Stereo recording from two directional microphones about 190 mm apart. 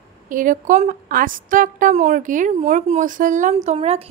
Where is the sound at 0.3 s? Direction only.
45° right (ahead or behind).